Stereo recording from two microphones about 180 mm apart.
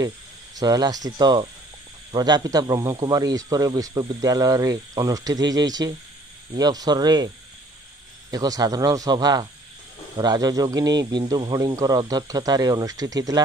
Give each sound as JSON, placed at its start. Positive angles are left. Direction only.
{"t": 0.6, "sound": "a man's voice", "side_deg": -20}
{"t": 8.3, "sound": "a man's voice", "side_deg": -20}